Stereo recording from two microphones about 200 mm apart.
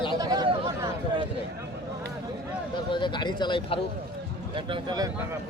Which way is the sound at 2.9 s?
25° left (ahead or behind).